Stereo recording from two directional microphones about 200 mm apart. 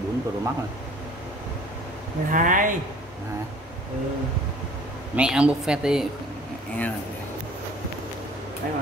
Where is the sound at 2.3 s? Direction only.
40° right (ahead or behind).